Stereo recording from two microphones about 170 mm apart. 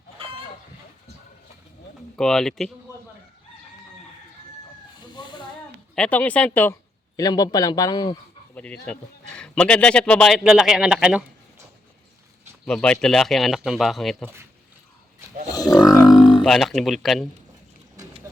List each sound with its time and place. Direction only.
2.1 s a man's voice: 5° left (ahead or behind)
4.9 s cat: 25° left (ahead or behind)
5.9 s speech: 5° left (ahead or behind)
7.2 s a man's voice: 20° left (ahead or behind)
8.5 s a man's voice: 5° left (ahead or behind)
12.6 s a man's voice: 5° left (ahead or behind)
15.4 s speech: 20° left (ahead or behind)
16.0 s a sound: 30° left (ahead or behind)
16.4 s a man's voice: centre (ahead or behind)